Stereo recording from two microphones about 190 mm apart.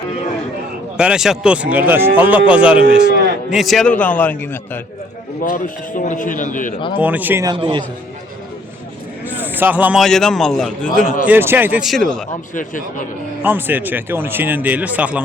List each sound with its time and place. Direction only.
0.9 s speech: 5° right (ahead or behind)
2.8 s speech: 55° right (ahead or behind)
3.5 s a man's voice: centre (ahead or behind)
5.4 s a man's voice: 45° left (ahead or behind)
6.7 s speech: 25° left (ahead or behind)
7.0 s speech: 10° right (ahead or behind)
7.5 s a man's voice: 25° right (ahead or behind)
9.2 s a man's voice: 10° right (ahead or behind)
11.0 s a man's voice: 45° left (ahead or behind)
11.3 s speech: 10° right (ahead or behind)
12.5 s a man's voice: 45° left (ahead or behind)
13.4 s speech: 10° right (ahead or behind)